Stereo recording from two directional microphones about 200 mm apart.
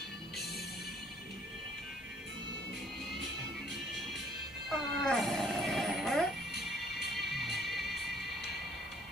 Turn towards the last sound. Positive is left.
turn(degrees=0)  # may be behind; listen again after turning